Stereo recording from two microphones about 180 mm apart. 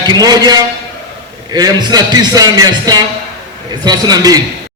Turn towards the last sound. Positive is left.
turn(degrees=-20)  # may be behind; listen again after turning